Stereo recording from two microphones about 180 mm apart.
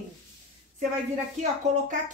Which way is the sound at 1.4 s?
45° right (ahead or behind).